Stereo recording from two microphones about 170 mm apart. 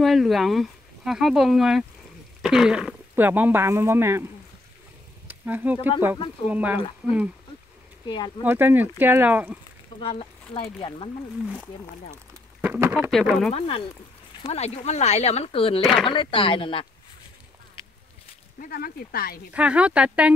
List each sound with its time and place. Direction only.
0.0 s speech: centre (ahead or behind)
5.3 s a sound: 10° right (ahead or behind)
6.5 s speech: 10° right (ahead or behind)
8.1 s speech: 25° left (ahead or behind)
8.5 s speech: 10° right (ahead or behind)
9.9 s speech: 30° left (ahead or behind)
11.4 s speech: 5° right (ahead or behind)
13.5 s speech: 35° left (ahead or behind)
15.8 s speech: centre (ahead or behind)
16.1 s speech: 30° left (ahead or behind)
18.6 s speech: 60° left (ahead or behind)
19.5 s speech: 5° right (ahead or behind)